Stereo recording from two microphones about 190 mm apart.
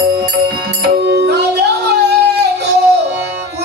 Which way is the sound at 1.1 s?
60° right (ahead or behind).